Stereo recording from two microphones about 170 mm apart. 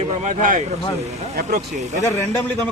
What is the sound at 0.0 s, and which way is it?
Speech, 40° right (ahead or behind).